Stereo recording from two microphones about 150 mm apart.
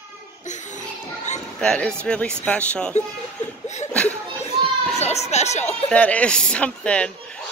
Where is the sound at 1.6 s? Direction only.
5° left (ahead or behind).